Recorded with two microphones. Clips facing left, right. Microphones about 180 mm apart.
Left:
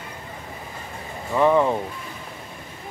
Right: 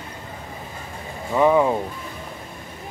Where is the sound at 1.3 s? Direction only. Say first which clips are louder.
Right 1 dB; 10° right (ahead or behind).